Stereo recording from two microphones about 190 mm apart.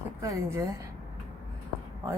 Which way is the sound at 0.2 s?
15° right (ahead or behind).